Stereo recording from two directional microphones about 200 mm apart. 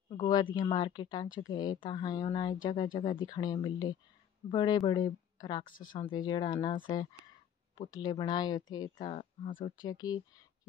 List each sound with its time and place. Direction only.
0.3 s speech: 25° left (ahead or behind)
5.7 s speech: 45° left (ahead or behind)
5.9 s speech: 25° left (ahead or behind)
9.5 s speech: 45° left (ahead or behind)
9.8 s speech: 20° left (ahead or behind)